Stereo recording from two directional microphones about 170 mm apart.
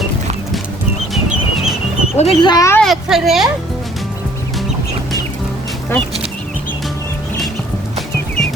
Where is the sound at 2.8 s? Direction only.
Centre (ahead or behind).